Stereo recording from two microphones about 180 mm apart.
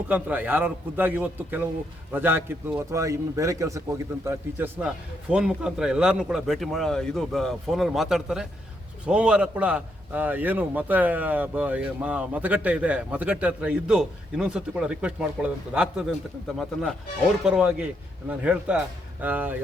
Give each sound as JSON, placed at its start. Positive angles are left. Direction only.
{"t": 0.1, "sound": "a man's voice", "side_deg": -10}
{"t": 17.4, "sound": "a man's voice", "side_deg": -5}